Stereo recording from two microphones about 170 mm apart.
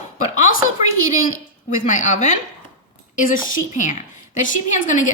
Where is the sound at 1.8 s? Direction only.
45° left (ahead or behind).